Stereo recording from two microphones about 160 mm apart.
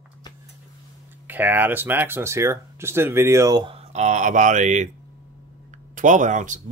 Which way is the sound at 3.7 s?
45° right (ahead or behind).